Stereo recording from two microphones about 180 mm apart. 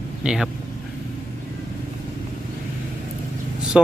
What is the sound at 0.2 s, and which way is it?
Speech, 5° right (ahead or behind).